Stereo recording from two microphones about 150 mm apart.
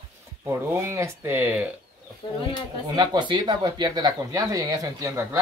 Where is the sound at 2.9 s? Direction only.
25° right (ahead or behind).